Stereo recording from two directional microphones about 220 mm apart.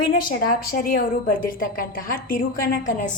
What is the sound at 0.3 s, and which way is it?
A woman's voice, 40° left (ahead or behind).